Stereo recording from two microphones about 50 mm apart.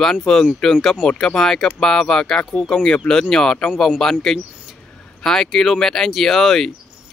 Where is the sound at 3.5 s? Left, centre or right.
Left.